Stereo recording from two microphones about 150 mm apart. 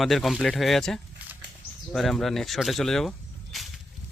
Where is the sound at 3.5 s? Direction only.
Centre (ahead or behind).